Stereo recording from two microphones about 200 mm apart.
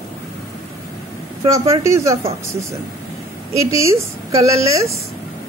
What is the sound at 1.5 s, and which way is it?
Speech, 15° right (ahead or behind).